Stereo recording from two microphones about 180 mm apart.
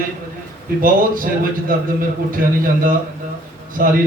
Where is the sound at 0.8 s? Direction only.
50° right (ahead or behind).